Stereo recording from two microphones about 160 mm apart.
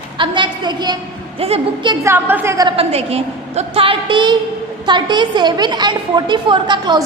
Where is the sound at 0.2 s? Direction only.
30° right (ahead or behind).